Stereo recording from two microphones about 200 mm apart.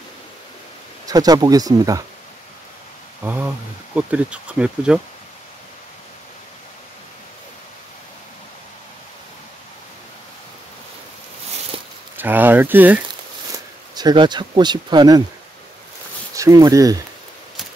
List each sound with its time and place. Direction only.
1.0 s speech: 20° right (ahead or behind)
3.9 s speech: 5° right (ahead or behind)
12.2 s speech: 10° right (ahead or behind)
13.9 s speech: 20° right (ahead or behind)
16.3 s speech: 15° right (ahead or behind)